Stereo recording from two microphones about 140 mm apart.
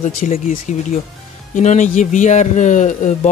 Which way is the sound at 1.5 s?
60° left (ahead or behind).